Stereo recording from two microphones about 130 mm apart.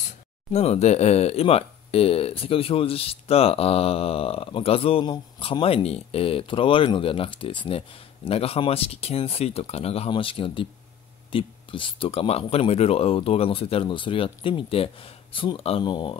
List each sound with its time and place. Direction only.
0.5 s speech: 55° left (ahead or behind)
15.8 s speech: 40° left (ahead or behind)